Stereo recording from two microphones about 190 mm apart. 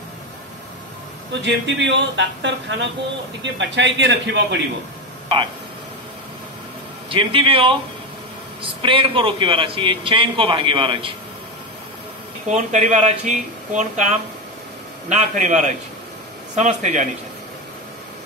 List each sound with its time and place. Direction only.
1.4 s speech: 70° right (ahead or behind)
7.1 s a man's voice: 25° right (ahead or behind)
12.4 s speech: 40° right (ahead or behind)